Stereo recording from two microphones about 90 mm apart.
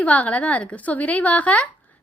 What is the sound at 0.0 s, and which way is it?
A woman's voice, 15° left (ahead or behind).